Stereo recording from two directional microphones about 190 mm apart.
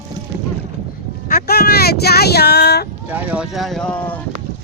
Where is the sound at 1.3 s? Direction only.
55° left (ahead or behind).